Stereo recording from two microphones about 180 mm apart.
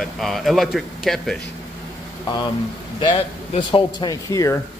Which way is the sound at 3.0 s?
30° left (ahead or behind).